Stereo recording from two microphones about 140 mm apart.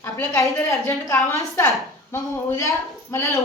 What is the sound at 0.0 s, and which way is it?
A woman's voice, 20° left (ahead or behind).